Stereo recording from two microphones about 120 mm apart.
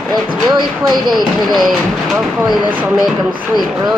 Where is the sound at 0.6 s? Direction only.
35° right (ahead or behind).